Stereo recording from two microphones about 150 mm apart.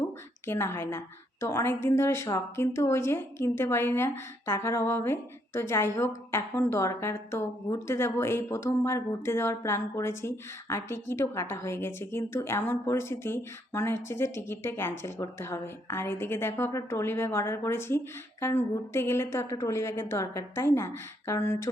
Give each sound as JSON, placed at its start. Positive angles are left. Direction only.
{"t": 0.4, "sound": "a woman's voice", "side_deg": 15}